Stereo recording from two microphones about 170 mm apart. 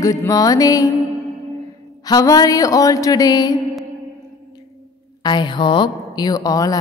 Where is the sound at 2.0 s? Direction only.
20° left (ahead or behind).